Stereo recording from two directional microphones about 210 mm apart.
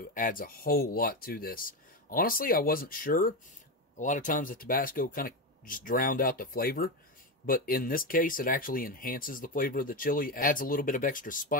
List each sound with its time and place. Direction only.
0.1 s speech: 40° left (ahead or behind)